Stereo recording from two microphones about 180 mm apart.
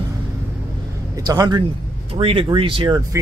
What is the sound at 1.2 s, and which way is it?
Speech, 20° right (ahead or behind).